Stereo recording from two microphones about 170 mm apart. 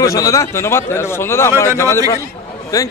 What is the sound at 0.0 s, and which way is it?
A man's voice, 20° left (ahead or behind).